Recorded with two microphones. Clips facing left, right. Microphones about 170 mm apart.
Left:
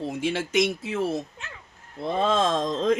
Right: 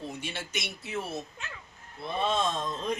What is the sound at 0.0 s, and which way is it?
Speech, 90° left.